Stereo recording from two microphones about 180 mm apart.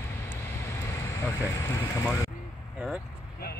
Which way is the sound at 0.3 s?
15° left (ahead or behind).